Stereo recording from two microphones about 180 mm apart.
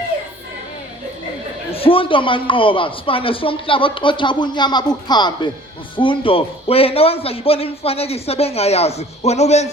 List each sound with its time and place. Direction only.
1.7 s a man's voice: 30° left (ahead or behind)